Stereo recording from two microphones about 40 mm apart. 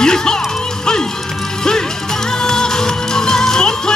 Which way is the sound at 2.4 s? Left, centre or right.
Centre.